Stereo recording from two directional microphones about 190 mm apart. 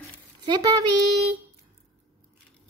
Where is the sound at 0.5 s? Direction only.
20° right (ahead or behind).